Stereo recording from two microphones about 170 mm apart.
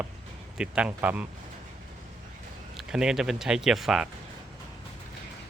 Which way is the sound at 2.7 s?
5° right (ahead or behind).